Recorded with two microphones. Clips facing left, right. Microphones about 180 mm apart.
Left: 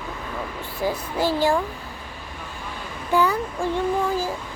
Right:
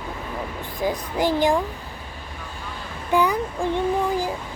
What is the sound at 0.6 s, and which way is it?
Speech, 15° right (ahead or behind).